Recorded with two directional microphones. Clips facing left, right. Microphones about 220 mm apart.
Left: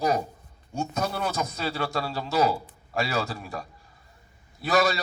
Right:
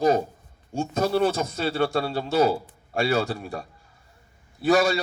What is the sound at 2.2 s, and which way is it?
Speech, 50° right (ahead or behind).